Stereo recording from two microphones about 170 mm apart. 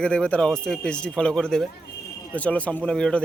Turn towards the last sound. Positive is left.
turn(degrees=5)  # may be behind; listen again after turning